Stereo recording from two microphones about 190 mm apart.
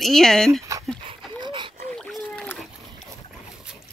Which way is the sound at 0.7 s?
15° right (ahead or behind).